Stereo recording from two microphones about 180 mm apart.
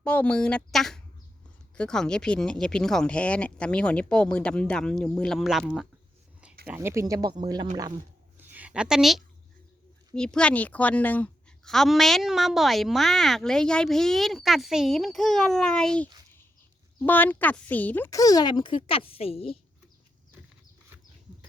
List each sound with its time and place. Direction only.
0.0 s a woman's voice: 10° left (ahead or behind)
6.7 s speech: 15° right (ahead or behind)
8.4 s a sound: 10° right (ahead or behind)
10.2 s a woman's voice: 5° left (ahead or behind); by 19.5 s 35° left (ahead or behind)